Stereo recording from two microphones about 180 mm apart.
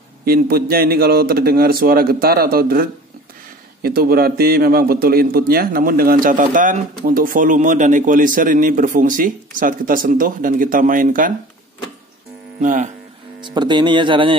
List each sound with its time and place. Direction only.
0.2 s a man's voice: 55° right (ahead or behind)
12.6 s a man's voice: 45° right (ahead or behind)
13.4 s speech: 25° right (ahead or behind)